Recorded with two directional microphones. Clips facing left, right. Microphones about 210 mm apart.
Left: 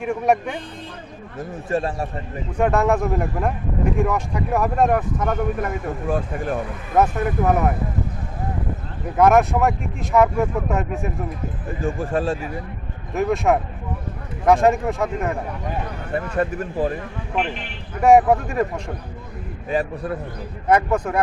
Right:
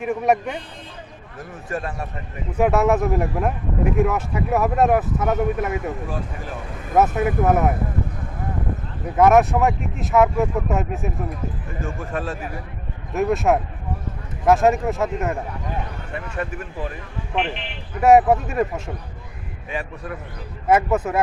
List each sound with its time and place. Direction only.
0.0 s speech: centre (ahead or behind)
1.4 s a man's voice: 25° left (ahead or behind)
2.5 s speech: 5° right (ahead or behind)
6.1 s speech: 50° left (ahead or behind)
6.9 s speech: 5° right (ahead or behind)
9.1 s speech: centre (ahead or behind)
11.8 s speech: 30° left (ahead or behind)
13.1 s speech: centre (ahead or behind)
16.1 s speech: 40° left (ahead or behind)
18.0 s speech: 5° right (ahead or behind)
19.7 s speech: 35° left (ahead or behind)
20.7 s speech: 5° right (ahead or behind)